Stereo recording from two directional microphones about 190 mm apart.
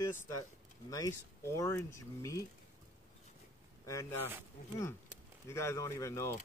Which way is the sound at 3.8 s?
15° left (ahead or behind).